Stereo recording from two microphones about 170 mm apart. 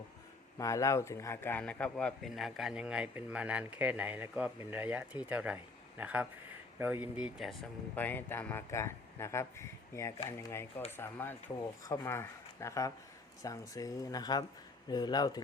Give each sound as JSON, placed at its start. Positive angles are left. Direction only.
{"t": 0.6, "sound": "a man's voice", "side_deg": 20}
{"t": 7.9, "sound": "speech", "side_deg": 10}